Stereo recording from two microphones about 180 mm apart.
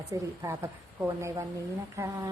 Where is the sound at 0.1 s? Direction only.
15° right (ahead or behind).